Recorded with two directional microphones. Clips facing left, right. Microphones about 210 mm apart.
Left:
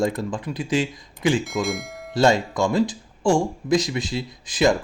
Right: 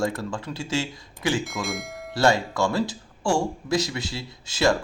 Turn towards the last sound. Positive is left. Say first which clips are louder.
# left 3 dB
turn(degrees=15)  # may be behind; listen again after turning